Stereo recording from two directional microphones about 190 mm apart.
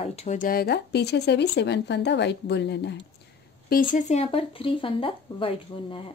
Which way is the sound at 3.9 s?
35° left (ahead or behind).